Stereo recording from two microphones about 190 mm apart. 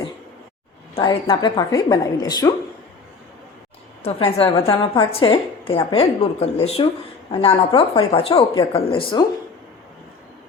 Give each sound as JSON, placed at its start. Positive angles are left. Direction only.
{"t": 0.9, "sound": "a woman's voice", "side_deg": 25}
{"t": 4.0, "sound": "a woman's voice", "side_deg": 30}